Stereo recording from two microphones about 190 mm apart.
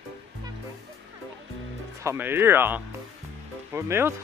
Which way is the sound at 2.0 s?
10° right (ahead or behind).